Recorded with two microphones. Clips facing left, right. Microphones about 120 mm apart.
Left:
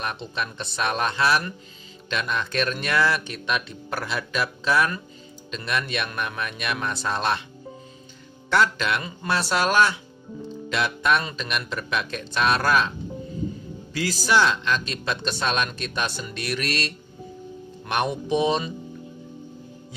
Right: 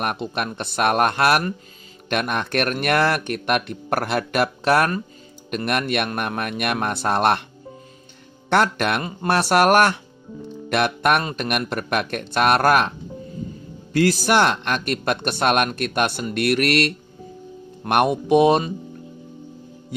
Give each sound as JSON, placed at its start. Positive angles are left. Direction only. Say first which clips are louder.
{"t": 0.0, "sound": "speech", "louder": "right 5 dB", "side_deg": -55}
{"t": 8.5, "sound": "speech", "louder": "right 3 dB", "side_deg": -60}
{"t": 13.9, "sound": "speech", "louder": "right 5 dB", "side_deg": -60}